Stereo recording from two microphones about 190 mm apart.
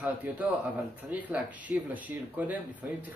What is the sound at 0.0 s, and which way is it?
Speech, 10° right (ahead or behind).